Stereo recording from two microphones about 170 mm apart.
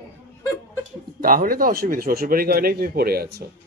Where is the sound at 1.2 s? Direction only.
55° right (ahead or behind).